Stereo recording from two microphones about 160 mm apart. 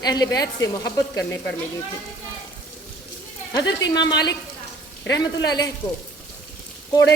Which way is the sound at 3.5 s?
25° left (ahead or behind).